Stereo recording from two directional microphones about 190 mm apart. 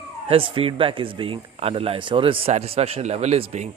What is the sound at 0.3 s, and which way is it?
A man's voice, 30° right (ahead or behind).